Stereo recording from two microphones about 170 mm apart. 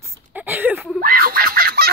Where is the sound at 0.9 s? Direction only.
55° right (ahead or behind).